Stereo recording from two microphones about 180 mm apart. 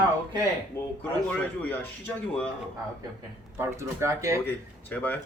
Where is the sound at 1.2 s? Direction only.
10° left (ahead or behind).